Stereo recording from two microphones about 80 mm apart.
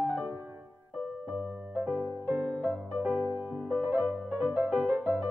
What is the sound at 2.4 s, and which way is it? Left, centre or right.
Music, centre.